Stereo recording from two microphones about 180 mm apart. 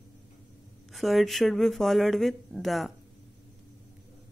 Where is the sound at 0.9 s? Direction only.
Centre (ahead or behind).